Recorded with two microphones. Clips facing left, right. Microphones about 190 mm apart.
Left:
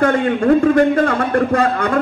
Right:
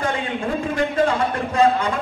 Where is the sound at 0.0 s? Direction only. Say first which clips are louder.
Left 9 dB; 65° left (ahead or behind).